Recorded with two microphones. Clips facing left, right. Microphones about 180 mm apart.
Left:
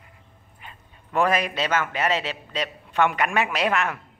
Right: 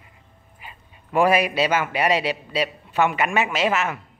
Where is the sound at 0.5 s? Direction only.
10° right (ahead or behind).